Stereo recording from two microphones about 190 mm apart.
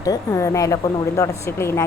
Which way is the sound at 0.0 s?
15° left (ahead or behind).